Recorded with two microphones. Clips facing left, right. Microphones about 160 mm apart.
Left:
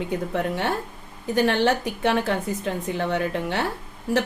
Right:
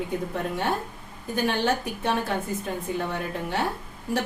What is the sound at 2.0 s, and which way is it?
A woman's voice, 80° left.